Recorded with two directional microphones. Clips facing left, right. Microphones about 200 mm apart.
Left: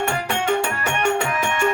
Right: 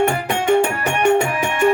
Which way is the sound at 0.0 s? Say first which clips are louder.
Right 5 dB; 15° right (ahead or behind).